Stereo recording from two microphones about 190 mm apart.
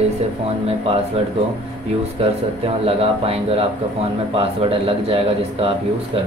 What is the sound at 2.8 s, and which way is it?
Speech, 30° right (ahead or behind).